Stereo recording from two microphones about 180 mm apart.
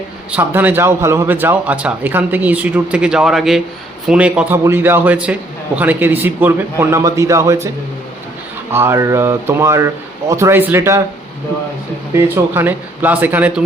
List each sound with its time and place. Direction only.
0.3 s a man's voice: 10° right (ahead or behind)
8.7 s a man's voice: 15° right (ahead or behind)
12.1 s a man's voice: 10° right (ahead or behind)